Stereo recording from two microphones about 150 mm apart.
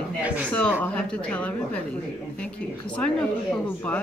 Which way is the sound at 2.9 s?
5° left (ahead or behind).